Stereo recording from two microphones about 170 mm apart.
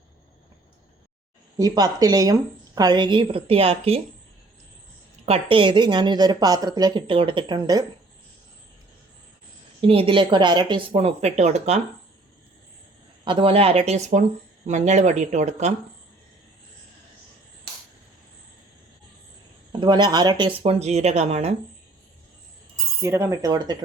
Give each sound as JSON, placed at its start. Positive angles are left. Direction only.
{"t": 1.5, "sound": "a woman's voice", "side_deg": -20}
{"t": 5.2, "sound": "speech", "side_deg": -35}
{"t": 9.8, "sound": "a woman's voice", "side_deg": -30}
{"t": 13.2, "sound": "a woman's voice", "side_deg": -30}
{"t": 19.8, "sound": "speech", "side_deg": -25}
{"t": 20.6, "sound": "a woman's voice", "side_deg": -35}
{"t": 23.0, "sound": "speech", "side_deg": -15}